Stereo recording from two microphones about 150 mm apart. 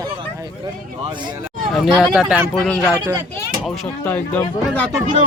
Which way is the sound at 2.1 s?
5° right (ahead or behind).